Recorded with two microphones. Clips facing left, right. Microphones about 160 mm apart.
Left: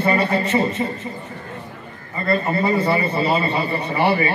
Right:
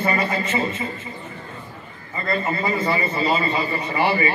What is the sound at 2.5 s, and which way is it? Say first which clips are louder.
A man's voice: left 3 dB; 35° left (ahead or behind).